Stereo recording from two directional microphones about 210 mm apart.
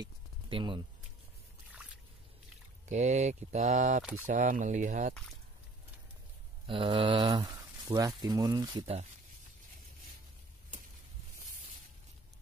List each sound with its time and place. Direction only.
0.0 s a sound: 25° right (ahead or behind)
2.9 s speech: 35° right (ahead or behind)
6.7 s speech: 25° right (ahead or behind)